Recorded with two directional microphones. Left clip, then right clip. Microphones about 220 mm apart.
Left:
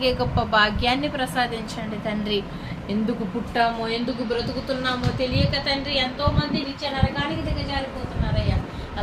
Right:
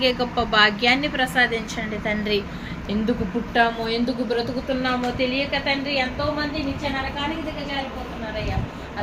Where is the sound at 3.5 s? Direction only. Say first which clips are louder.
Right 2 dB; centre (ahead or behind).